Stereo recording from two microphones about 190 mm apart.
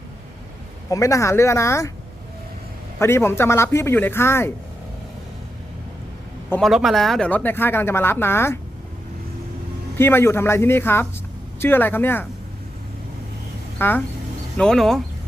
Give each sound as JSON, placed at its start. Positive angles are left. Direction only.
{"t": 0.9, "sound": "speech", "side_deg": 15}
{"t": 3.0, "sound": "speech", "side_deg": 15}
{"t": 6.5, "sound": "speech", "side_deg": 0}
{"t": 10.0, "sound": "speech", "side_deg": 10}
{"t": 13.7, "sound": "speech", "side_deg": 10}